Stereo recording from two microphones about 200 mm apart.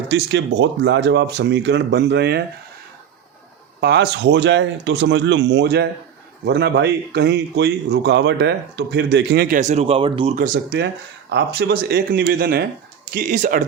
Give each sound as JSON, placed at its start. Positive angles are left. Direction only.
{"t": 0.1, "sound": "speech", "side_deg": -60}
{"t": 3.8, "sound": "speech", "side_deg": -55}
{"t": 9.6, "sound": "speech", "side_deg": -35}
{"t": 10.3, "sound": "speech", "side_deg": -45}